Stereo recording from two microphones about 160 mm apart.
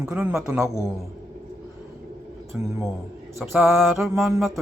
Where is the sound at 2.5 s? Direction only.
10° right (ahead or behind).